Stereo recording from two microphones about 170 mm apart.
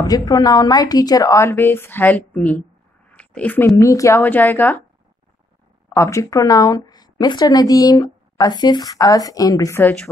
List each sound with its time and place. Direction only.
0.0 s a woman's voice: 20° left (ahead or behind)
5.9 s speech: 15° left (ahead or behind)